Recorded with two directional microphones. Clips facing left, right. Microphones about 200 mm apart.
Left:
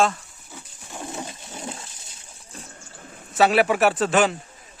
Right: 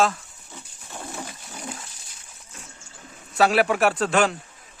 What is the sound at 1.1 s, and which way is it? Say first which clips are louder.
Water: left 2 dB; 25° left (ahead or behind).